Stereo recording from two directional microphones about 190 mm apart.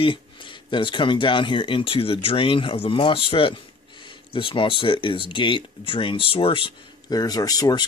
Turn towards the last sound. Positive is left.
turn(degrees=20)  # may be behind; listen again after turning